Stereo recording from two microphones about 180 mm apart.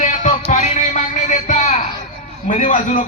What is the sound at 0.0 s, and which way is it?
Music, 40° left (ahead or behind).